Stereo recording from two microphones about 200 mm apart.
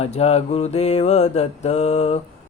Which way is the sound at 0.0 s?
30° left (ahead or behind).